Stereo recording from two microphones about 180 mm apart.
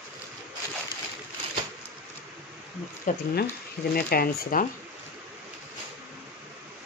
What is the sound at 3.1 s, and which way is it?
Speech, 45° left (ahead or behind).